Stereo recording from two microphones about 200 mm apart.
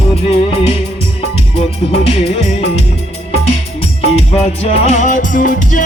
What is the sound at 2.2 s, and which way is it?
Music, 30° left (ahead or behind).